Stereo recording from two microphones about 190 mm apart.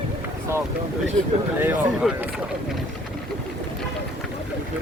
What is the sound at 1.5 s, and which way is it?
Speech, 5° right (ahead or behind).